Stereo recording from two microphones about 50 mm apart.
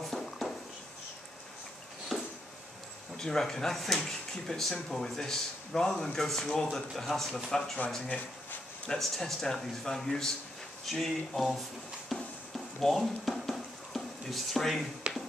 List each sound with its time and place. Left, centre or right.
0.0 s a sound: centre
2.1 s a sound: centre
3.2 s speech: centre
8.1 s speech: left
8.9 s speech: centre
12.1 s music: centre
12.5 s stir: centre